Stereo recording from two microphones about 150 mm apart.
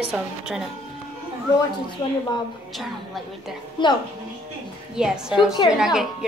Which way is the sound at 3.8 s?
30° left (ahead or behind).